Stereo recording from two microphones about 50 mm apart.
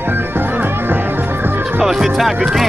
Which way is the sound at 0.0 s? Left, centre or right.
Right.